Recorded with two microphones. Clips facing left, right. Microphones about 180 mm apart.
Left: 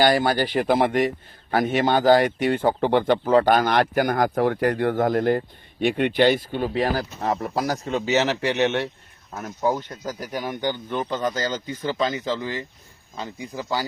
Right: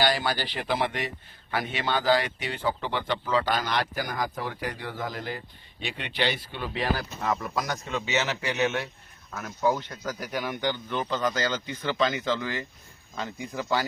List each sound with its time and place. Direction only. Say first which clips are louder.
0.0 s speech: left 7 dB; 45° left (ahead or behind)
8.6 s a man's voice: left 4 dB; 65° left (ahead or behind)
9.6 s speech: left 2 dB; 45° left (ahead or behind)